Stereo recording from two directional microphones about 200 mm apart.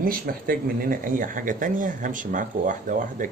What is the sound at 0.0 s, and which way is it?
Speech, 45° right (ahead or behind).